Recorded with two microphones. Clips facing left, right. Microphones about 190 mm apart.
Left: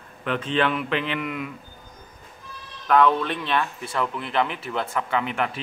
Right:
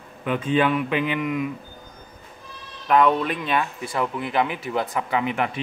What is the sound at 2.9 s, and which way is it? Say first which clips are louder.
Speech: right 1 dB; 5° right (ahead or behind).